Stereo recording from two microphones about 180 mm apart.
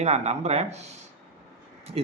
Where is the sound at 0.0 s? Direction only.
35° right (ahead or behind).